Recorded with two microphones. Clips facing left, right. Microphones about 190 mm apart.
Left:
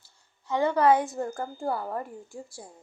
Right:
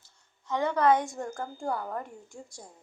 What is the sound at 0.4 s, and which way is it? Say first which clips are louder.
A woman's voice: left 2 dB; 10° left (ahead or behind).